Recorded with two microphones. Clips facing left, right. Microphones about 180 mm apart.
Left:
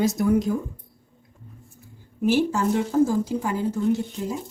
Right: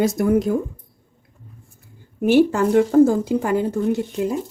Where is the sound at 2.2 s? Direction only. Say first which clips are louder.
Right 6 dB; 65° right (ahead or behind).